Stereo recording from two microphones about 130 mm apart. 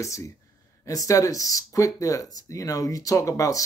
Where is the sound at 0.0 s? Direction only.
25° left (ahead or behind).